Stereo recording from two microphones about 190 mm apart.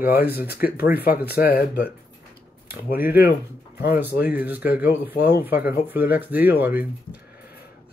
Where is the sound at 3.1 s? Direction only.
55° left (ahead or behind).